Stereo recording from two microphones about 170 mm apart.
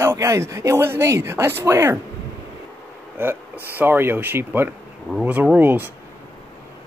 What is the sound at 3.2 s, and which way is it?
Speech, 10° right (ahead or behind).